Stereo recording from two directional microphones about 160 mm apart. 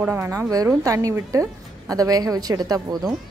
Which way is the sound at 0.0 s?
15° right (ahead or behind).